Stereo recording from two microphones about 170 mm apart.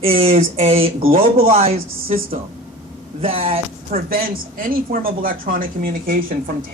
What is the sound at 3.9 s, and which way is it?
Speech, 60° right (ahead or behind).